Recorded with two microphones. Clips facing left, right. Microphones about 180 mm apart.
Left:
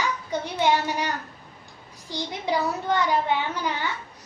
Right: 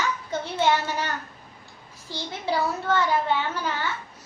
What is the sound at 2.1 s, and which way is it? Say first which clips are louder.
A child's voice: left 1 dB; 15° left (ahead or behind).